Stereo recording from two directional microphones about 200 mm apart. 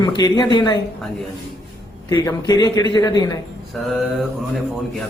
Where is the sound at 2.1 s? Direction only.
20° left (ahead or behind).